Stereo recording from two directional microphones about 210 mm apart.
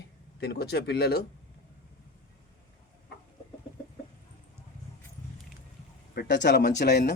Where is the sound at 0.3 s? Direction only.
50° left (ahead or behind).